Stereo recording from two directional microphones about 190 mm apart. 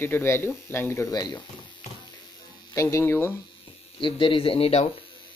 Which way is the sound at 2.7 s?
15° left (ahead or behind).